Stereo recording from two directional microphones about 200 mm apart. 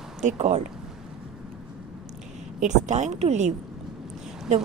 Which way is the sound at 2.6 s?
35° right (ahead or behind).